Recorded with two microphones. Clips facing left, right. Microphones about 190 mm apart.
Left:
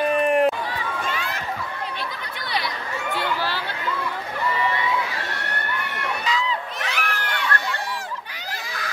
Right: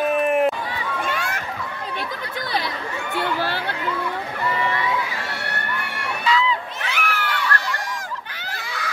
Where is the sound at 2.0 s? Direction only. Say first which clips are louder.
Right 3 dB; 40° right (ahead or behind).